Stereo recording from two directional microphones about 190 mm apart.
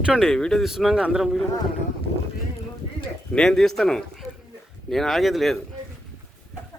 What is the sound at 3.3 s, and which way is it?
A man's voice, 5° left (ahead or behind).